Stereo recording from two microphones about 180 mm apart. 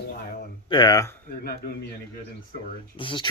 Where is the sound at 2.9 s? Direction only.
25° left (ahead or behind).